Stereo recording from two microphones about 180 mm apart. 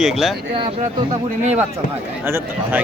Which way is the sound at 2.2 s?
10° right (ahead or behind).